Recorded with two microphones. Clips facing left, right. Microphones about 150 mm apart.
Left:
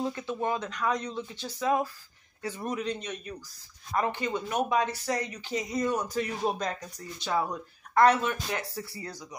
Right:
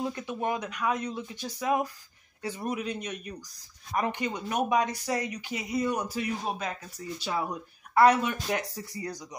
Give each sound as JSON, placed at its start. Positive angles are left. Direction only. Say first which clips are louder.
{"t": 0.1, "sound": "speech", "louder": "even", "side_deg": -15}